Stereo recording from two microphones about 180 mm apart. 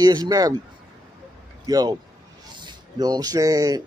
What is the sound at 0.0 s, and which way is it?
Speech, 20° right (ahead or behind).